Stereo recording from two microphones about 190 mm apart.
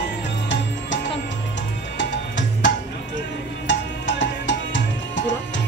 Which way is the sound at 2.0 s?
70° left (ahead or behind).